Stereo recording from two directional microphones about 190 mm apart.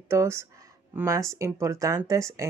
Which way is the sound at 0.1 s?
15° right (ahead or behind).